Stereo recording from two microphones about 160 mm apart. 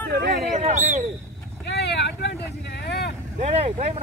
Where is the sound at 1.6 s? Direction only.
90° left.